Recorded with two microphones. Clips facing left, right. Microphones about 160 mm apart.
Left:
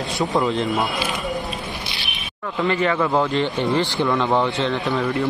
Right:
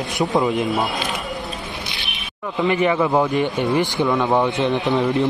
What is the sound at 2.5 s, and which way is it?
A man's voice, 15° right (ahead or behind).